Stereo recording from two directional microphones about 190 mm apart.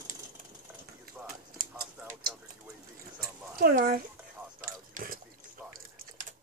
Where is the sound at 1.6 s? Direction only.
45° right (ahead or behind).